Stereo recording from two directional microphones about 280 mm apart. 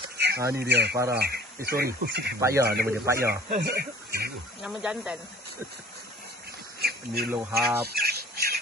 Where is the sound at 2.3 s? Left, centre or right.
Centre.